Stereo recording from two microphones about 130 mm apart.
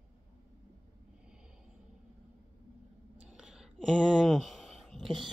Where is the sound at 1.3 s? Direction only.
5° right (ahead or behind).